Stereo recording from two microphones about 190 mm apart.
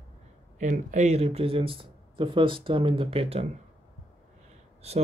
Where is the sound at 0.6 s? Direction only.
40° right (ahead or behind).